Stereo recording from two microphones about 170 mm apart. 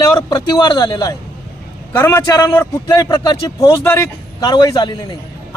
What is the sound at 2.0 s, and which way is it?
A man's voice, 15° left (ahead or behind).